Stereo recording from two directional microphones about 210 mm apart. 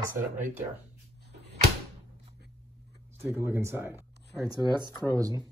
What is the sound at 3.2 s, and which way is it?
Speech, 10° right (ahead or behind).